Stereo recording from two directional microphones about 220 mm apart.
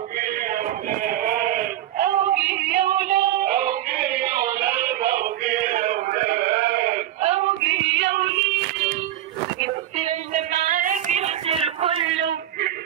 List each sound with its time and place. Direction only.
0.2 s sheep: 40° right (ahead or behind)
1.0 s male singing: 40° right (ahead or behind)
7.2 s male singing: 30° right (ahead or behind)
7.6 s music: 55° right (ahead or behind)
10.3 s a sound: 30° right (ahead or behind)